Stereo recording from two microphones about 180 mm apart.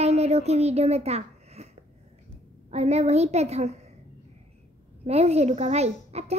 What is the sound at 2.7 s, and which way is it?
A child's voice, 40° right (ahead or behind).